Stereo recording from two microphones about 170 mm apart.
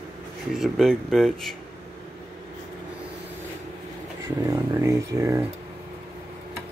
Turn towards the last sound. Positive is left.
turn(degrees=-15)  # may be behind; listen again after turning